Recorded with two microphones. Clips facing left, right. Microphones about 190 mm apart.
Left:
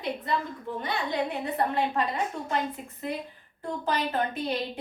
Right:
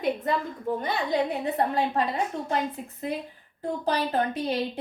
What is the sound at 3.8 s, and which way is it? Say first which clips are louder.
Speech: right 2 dB; 35° right (ahead or behind).